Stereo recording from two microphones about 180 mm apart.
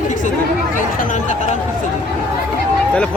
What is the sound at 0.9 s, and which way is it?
Speech, 40° left (ahead or behind).